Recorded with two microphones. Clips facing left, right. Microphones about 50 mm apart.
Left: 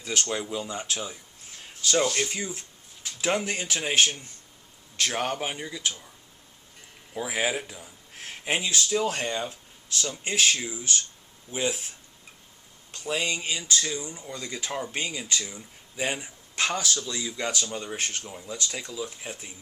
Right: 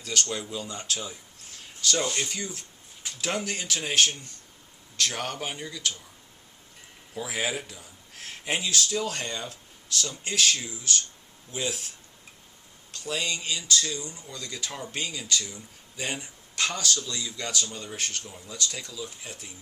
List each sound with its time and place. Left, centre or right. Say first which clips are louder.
0.0 s speech: left 1 dB; left
7.1 s speech: left 3 dB; centre
12.9 s speech: left 2 dB; left